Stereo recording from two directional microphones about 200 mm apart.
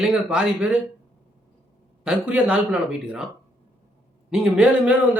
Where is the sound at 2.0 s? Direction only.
5° right (ahead or behind).